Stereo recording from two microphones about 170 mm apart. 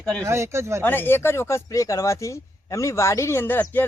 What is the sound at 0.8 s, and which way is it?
Speech, 10° left (ahead or behind).